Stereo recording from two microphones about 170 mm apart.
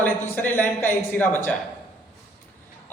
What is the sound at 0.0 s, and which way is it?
Speech, 10° left (ahead or behind).